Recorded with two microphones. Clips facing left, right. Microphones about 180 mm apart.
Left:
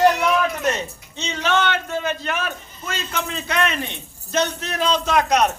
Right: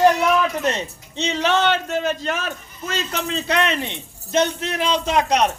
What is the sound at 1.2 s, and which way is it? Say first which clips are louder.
A man's voice: right 2 dB; 35° right (ahead or behind).